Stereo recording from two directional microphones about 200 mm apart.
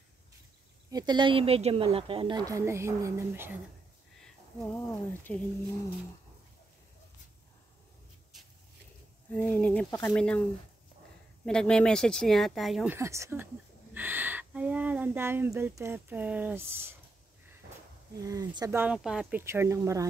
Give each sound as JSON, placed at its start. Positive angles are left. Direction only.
{"t": 0.8, "sound": "speech", "side_deg": -20}
{"t": 4.7, "sound": "speech", "side_deg": 10}
{"t": 9.3, "sound": "speech", "side_deg": 5}
{"t": 11.4, "sound": "speech", "side_deg": 5}
{"t": 12.9, "sound": "speech", "side_deg": -15}
{"t": 18.2, "sound": "speech", "side_deg": -15}
{"t": 19.4, "sound": "speech", "side_deg": -15}